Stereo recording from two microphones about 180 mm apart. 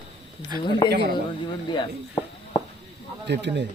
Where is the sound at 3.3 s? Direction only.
75° right (ahead or behind).